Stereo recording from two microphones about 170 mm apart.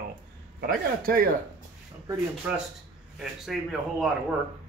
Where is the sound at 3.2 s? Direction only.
Centre (ahead or behind).